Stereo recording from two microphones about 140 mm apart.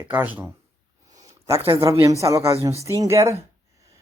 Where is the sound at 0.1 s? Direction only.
15° right (ahead or behind).